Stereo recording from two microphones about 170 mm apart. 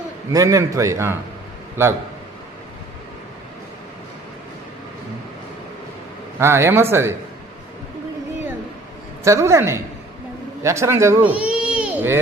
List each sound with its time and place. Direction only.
0.3 s a man's voice: 20° right (ahead or behind)
6.4 s a man's voice: 15° right (ahead or behind)
9.2 s a man's voice: 15° right (ahead or behind)